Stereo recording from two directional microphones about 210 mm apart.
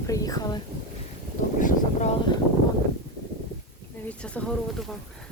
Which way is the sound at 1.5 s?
40° left (ahead or behind).